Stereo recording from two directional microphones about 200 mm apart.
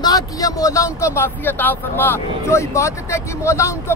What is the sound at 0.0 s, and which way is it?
Speech, 20° left (ahead or behind).